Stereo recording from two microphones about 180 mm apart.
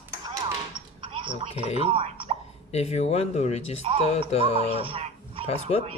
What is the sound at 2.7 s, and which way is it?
Speech, 35° left (ahead or behind).